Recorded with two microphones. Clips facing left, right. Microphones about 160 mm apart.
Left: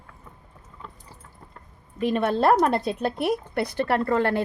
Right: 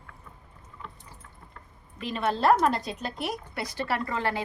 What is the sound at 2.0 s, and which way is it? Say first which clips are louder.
A woman's voice: left 5 dB; 50° left (ahead or behind).